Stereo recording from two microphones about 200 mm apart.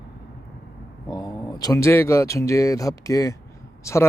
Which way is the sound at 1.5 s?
15° left (ahead or behind).